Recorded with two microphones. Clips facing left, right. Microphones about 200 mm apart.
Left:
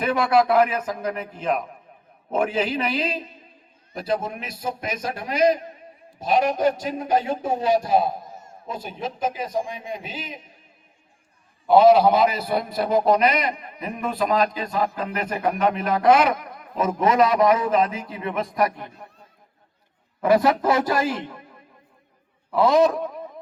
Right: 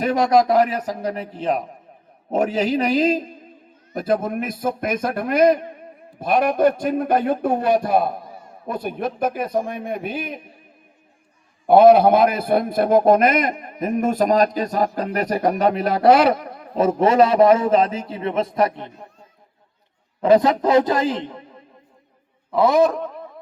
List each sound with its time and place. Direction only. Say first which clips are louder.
0.0 s a man's voice: right 3 dB; 40° right (ahead or behind); by 8.1 s 60° right (ahead or behind)
8.2 s a sound: right 2 dB; 45° left (ahead or behind)
8.6 s a man's voice: right 6 dB; 60° right (ahead or behind)
11.6 s a man's voice: right 3 dB; 55° right (ahead or behind); by 19.0 s 25° right (ahead or behind)
20.2 s a man's voice: right 3 dB; 20° right (ahead or behind)
22.5 s a sound: right 1 dB; 15° right (ahead or behind)